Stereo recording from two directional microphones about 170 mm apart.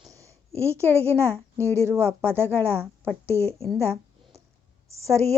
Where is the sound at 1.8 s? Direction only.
15° right (ahead or behind).